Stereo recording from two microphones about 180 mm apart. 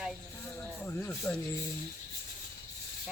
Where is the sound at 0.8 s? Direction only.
10° left (ahead or behind).